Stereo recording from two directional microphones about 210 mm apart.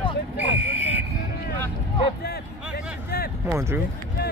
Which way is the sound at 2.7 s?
45° left (ahead or behind).